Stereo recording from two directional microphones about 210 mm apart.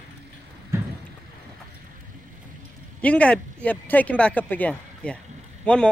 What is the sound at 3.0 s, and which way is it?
Speech, 5° left (ahead or behind).